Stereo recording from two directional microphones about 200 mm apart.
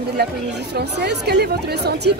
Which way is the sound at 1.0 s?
55° right (ahead or behind).